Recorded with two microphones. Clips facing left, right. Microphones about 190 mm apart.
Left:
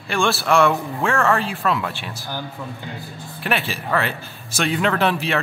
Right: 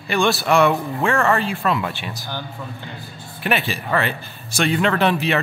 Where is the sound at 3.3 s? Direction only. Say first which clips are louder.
Right 2 dB; centre (ahead or behind).